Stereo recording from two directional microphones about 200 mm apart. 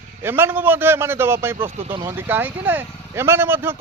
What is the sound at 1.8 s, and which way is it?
Speech, 25° right (ahead or behind).